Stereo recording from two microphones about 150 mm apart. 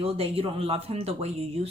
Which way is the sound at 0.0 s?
40° right (ahead or behind).